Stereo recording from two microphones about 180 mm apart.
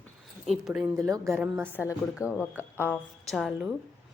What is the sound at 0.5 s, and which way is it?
Speech, 5° right (ahead or behind).